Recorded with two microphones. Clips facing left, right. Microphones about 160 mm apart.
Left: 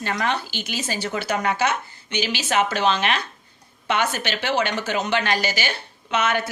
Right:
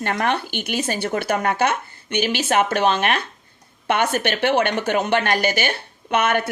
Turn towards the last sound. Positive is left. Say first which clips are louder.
# right 3 dB
turn(degrees=-55)  # may be behind; listen again after turning